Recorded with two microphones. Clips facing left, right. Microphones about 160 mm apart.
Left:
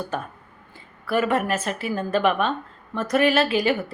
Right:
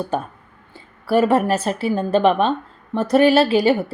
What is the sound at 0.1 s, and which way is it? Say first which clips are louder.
A woman's voice: right 6 dB; 30° right (ahead or behind).